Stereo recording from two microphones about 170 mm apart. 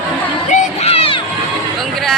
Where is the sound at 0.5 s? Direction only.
35° left (ahead or behind).